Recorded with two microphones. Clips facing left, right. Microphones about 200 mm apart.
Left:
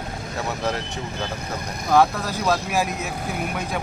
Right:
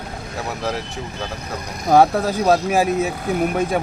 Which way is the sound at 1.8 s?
45° right (ahead or behind).